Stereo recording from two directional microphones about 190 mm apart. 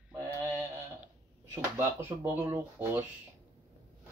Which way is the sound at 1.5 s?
10° right (ahead or behind).